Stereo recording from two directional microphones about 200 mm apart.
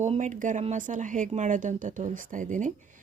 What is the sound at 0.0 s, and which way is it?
Speech, 35° right (ahead or behind).